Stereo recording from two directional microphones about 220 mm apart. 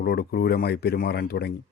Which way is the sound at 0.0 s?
45° left (ahead or behind).